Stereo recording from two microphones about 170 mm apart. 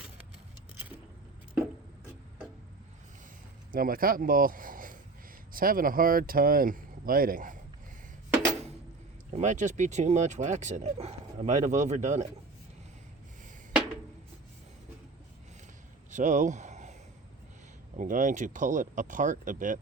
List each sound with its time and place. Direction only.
3.7 s speech: 55° right (ahead or behind)
9.3 s speech: 45° right (ahead or behind)
16.0 s a sound: 45° right (ahead or behind)
17.9 s speech: 50° right (ahead or behind)